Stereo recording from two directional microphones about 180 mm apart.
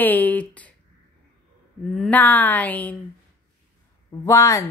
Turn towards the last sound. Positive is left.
turn(degrees=15)  # may be behind; listen again after turning